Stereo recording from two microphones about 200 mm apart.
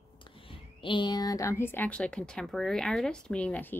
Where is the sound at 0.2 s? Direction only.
25° left (ahead or behind).